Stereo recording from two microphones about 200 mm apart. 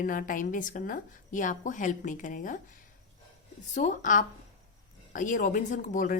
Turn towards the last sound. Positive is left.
turn(degrees=40)  # may be behind; listen again after turning